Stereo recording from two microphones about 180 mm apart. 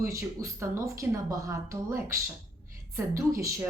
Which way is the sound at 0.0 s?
15° right (ahead or behind).